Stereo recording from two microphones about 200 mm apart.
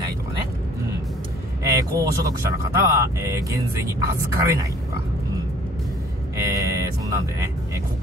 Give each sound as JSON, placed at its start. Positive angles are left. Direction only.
{"t": 1.6, "sound": "speech", "side_deg": -15}
{"t": 6.3, "sound": "music", "side_deg": -15}